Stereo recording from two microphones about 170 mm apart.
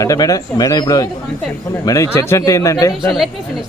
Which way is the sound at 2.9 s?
Centre (ahead or behind).